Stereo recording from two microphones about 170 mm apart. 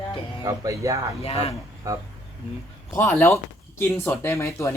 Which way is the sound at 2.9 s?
15° left (ahead or behind).